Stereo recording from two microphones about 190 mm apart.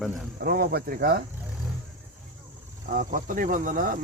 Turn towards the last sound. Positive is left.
turn(degrees=-45)  # may be behind; listen again after turning